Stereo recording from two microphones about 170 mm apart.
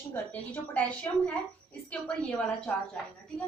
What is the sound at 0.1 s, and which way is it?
Speech, 10° left (ahead or behind).